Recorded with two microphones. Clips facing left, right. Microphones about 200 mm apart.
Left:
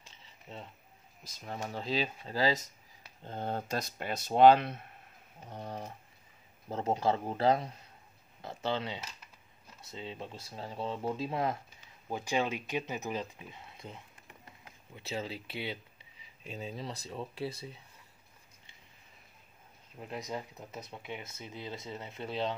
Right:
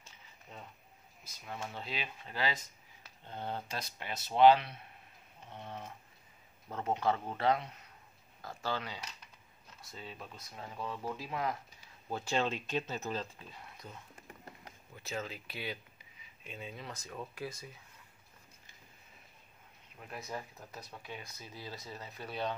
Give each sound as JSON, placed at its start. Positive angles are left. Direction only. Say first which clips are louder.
{"t": 1.4, "sound": "speech", "louder": "left 4 dB", "side_deg": 40}
{"t": 8.4, "sound": "speech", "louder": "left 4 dB", "side_deg": 25}
{"t": 12.1, "sound": "speech", "louder": "left 1 dB", "side_deg": 15}
{"t": 20.0, "sound": "speech", "louder": "left 4 dB", "side_deg": 20}